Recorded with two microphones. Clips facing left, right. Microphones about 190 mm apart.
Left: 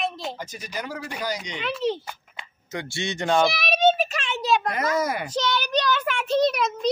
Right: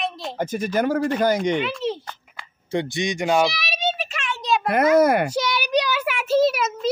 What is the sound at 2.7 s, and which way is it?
Speech, 15° right (ahead or behind).